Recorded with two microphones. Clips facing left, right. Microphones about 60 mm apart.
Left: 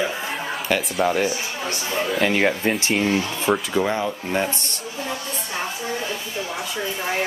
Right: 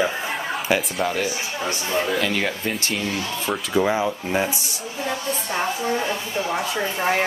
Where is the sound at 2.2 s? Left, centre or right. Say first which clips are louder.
Left 4 dB; left.